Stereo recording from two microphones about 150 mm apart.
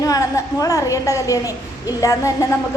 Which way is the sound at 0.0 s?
25° left (ahead or behind).